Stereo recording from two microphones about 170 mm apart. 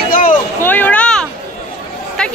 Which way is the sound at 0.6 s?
10° left (ahead or behind).